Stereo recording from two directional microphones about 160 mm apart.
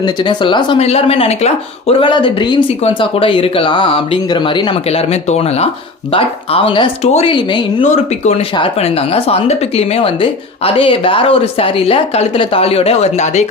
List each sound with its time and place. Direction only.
0.0 s speech: 30° left (ahead or behind)
7.8 s speech: 45° left (ahead or behind)